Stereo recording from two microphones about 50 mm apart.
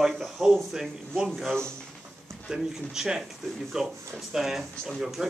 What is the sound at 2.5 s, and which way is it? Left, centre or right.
Speech, centre.